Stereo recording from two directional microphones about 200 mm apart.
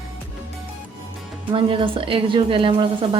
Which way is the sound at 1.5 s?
25° right (ahead or behind).